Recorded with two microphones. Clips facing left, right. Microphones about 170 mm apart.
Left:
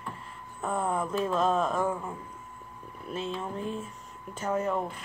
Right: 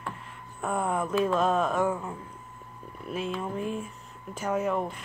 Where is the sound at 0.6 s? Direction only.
10° right (ahead or behind).